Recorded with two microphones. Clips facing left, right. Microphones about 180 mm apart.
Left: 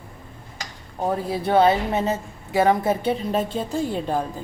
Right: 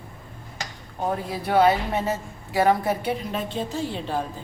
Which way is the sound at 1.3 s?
25° left (ahead or behind).